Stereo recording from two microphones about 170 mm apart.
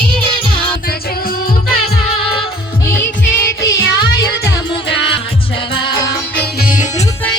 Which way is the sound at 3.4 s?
75° left (ahead or behind).